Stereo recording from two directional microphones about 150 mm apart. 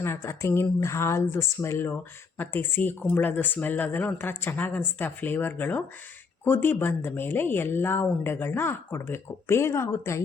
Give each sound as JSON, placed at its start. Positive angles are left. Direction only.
{"t": 0.0, "sound": "speech", "side_deg": 15}